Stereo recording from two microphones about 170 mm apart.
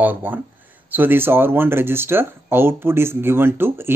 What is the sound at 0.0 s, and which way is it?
Speech, 10° right (ahead or behind).